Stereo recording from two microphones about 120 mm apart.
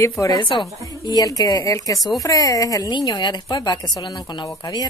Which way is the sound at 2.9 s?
40° left (ahead or behind).